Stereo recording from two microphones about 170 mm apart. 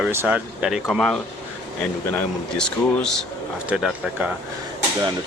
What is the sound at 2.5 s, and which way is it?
Speech, 5° left (ahead or behind).